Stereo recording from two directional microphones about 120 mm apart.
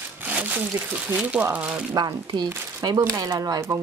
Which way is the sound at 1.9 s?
35° right (ahead or behind).